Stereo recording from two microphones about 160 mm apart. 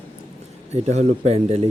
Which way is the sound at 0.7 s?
45° right (ahead or behind).